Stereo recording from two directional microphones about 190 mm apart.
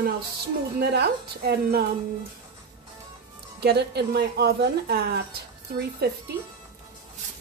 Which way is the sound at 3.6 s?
60° right (ahead or behind).